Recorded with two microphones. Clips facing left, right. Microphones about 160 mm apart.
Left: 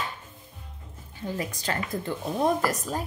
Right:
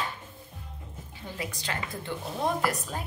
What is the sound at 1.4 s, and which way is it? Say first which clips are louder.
A woman's voice: left 2 dB; 45° left (ahead or behind).